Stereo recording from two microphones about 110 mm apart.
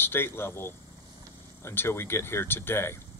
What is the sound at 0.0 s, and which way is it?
Speech, 20° left (ahead or behind).